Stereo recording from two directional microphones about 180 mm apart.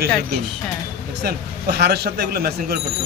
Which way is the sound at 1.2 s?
65° right (ahead or behind).